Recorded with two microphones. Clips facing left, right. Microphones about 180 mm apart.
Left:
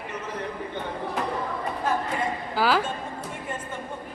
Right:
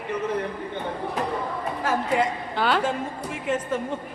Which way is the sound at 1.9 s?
90° right.